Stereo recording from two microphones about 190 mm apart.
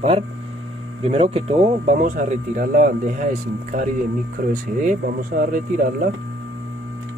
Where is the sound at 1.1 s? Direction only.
30° right (ahead or behind).